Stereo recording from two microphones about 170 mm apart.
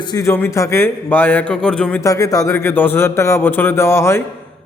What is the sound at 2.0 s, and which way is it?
A man's voice, 20° left (ahead or behind).